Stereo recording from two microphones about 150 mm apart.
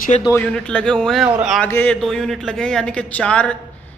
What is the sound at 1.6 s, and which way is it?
A man's voice, 10° left (ahead or behind).